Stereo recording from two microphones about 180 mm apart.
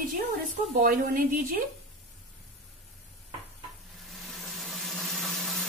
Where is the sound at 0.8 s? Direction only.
50° right (ahead or behind).